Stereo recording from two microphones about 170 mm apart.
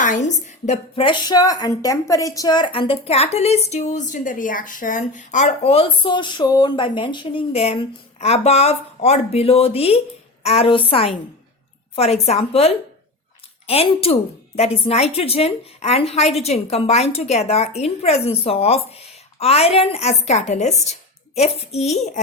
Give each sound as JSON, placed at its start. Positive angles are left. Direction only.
{"t": 0.0, "sound": "a woman's voice", "side_deg": 45}